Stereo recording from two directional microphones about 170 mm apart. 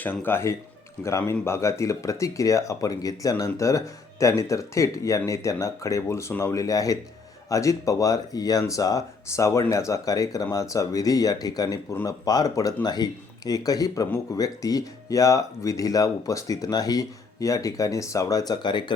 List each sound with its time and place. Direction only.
0.0 s speech: 10° left (ahead or behind)